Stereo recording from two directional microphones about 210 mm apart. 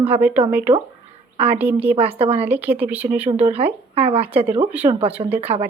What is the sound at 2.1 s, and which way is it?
Speech, 25° right (ahead or behind).